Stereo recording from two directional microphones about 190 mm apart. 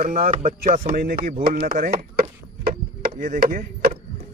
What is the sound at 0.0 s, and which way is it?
Speech, 40° right (ahead or behind).